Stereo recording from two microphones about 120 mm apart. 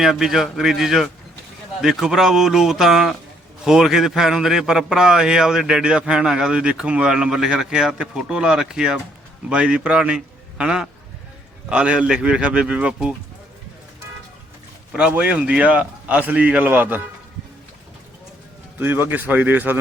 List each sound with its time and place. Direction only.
0.0 s a man's voice: 5° right (ahead or behind)
14.9 s a man's voice: 10° right (ahead or behind)
18.8 s a man's voice: 15° right (ahead or behind)